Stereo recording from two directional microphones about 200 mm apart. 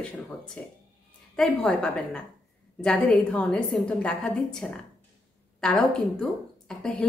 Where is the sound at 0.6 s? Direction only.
5° left (ahead or behind).